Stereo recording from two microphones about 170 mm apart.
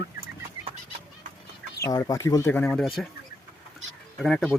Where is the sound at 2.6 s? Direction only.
5° left (ahead or behind).